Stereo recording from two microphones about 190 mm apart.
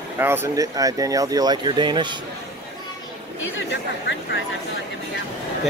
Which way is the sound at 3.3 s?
80° left.